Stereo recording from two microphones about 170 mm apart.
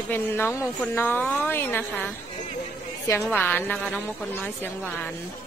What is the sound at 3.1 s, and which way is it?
Speech, 15° left (ahead or behind).